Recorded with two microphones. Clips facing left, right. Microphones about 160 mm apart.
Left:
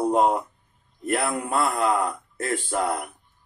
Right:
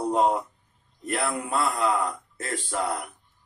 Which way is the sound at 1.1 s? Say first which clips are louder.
Left 3 dB; 55° left (ahead or behind).